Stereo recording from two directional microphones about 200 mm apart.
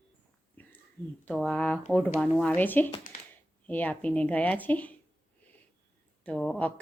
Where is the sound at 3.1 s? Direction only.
40° left (ahead or behind).